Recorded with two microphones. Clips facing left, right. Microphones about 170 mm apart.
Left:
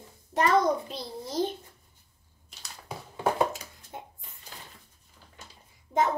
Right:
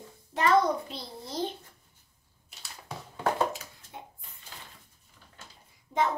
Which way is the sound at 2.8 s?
10° left (ahead or behind).